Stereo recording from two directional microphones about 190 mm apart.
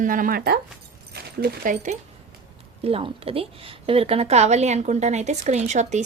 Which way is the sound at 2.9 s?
30° right (ahead or behind).